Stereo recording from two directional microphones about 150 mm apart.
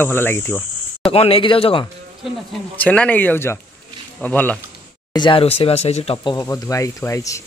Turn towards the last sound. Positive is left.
turn(degrees=20)  # may be behind; listen again after turning